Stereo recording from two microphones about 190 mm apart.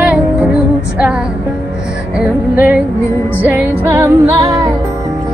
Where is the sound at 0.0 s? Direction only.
5° right (ahead or behind).